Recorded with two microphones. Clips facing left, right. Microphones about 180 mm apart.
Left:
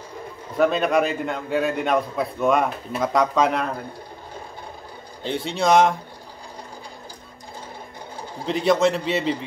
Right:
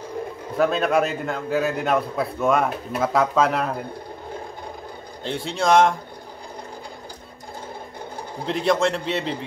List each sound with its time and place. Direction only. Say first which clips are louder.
0.6 s a man's voice: left 1 dB; centre (ahead or behind)
5.2 s a man's voice: left 1 dB; centre (ahead or behind)
8.5 s a man's voice: left 2 dB; centre (ahead or behind)